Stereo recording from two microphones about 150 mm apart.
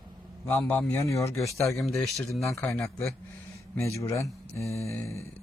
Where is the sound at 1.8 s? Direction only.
Centre (ahead or behind).